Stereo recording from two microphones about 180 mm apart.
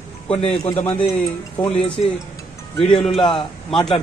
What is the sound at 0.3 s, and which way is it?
Speech, 30° left (ahead or behind).